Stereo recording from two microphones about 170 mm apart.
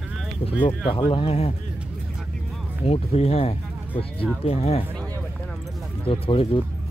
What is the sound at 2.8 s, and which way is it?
Speech, 35° left (ahead or behind).